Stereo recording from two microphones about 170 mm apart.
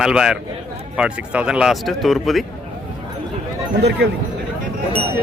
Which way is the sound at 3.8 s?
85° right.